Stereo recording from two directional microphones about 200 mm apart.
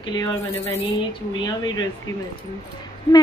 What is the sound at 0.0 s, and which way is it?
Speech, 20° left (ahead or behind).